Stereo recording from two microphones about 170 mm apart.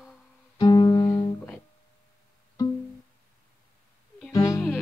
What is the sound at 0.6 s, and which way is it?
Music, 25° left (ahead or behind).